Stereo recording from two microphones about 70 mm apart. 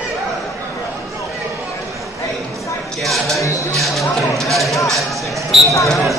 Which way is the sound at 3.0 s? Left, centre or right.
Centre.